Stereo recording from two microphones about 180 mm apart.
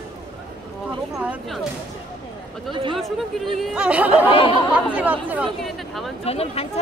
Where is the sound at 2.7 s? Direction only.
25° right (ahead or behind).